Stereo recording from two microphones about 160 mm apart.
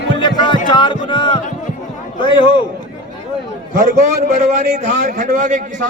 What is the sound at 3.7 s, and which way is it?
A man's voice, 55° right (ahead or behind).